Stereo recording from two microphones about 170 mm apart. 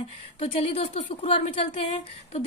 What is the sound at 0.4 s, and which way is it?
A woman's voice, 35° left (ahead or behind).